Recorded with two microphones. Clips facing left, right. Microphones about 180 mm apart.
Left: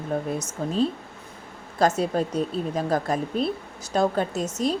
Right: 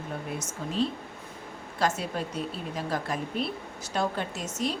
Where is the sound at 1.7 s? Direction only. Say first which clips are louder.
Left 7 dB; 40° left (ahead or behind).